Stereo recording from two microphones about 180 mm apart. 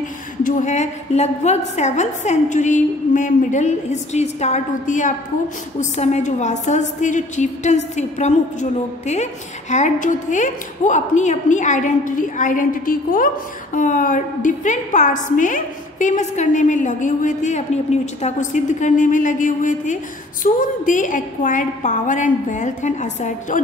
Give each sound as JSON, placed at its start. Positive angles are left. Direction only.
{"t": 0.4, "sound": "a woman's voice", "side_deg": 45}